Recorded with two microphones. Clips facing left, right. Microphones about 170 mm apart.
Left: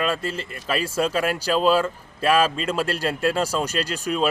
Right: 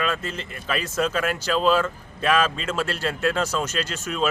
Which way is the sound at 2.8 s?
40° left (ahead or behind).